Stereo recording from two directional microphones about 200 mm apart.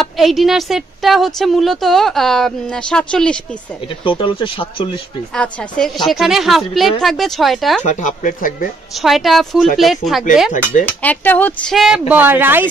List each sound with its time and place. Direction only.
0.0 s a woman's voice: centre (ahead or behind)
4.0 s speech: 25° left (ahead or behind)
5.3 s a woman's voice: 5° left (ahead or behind)
7.8 s speech: 40° left (ahead or behind)
9.0 s a woman's voice: centre (ahead or behind)
10.5 s speech: 40° left (ahead or behind)
11.0 s speech: 10° left (ahead or behind); by 12.6 s 10° right (ahead or behind)